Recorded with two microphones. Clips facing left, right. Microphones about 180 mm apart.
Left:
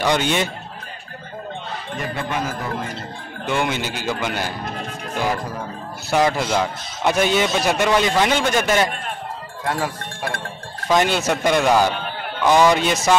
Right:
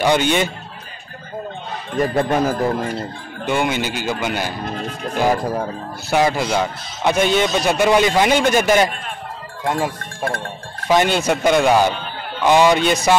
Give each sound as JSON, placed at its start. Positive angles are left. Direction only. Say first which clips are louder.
{"t": 0.0, "sound": "a man's voice", "louder": "right 3 dB", "side_deg": 0}
{"t": 2.0, "sound": "speech", "louder": "right 9 dB", "side_deg": -40}
{"t": 3.4, "sound": "a man's voice", "louder": "right 3 dB", "side_deg": -5}
{"t": 6.1, "sound": "a man's voice", "louder": "right 1 dB", "side_deg": -5}
{"t": 7.9, "sound": "a man's voice", "louder": "right 4 dB", "side_deg": -10}
{"t": 10.9, "sound": "a man's voice", "louder": "right 2 dB", "side_deg": 0}